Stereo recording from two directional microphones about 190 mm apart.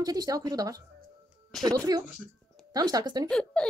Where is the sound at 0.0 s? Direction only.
20° right (ahead or behind).